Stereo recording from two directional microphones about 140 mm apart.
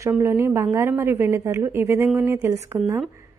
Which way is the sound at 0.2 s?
20° right (ahead or behind).